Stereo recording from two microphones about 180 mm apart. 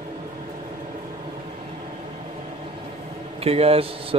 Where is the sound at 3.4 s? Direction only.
35° right (ahead or behind).